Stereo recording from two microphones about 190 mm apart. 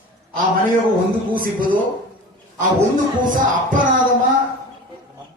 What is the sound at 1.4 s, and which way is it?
Music, 45° right (ahead or behind).